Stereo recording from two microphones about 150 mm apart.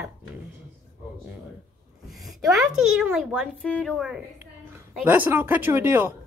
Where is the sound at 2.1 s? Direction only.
Centre (ahead or behind).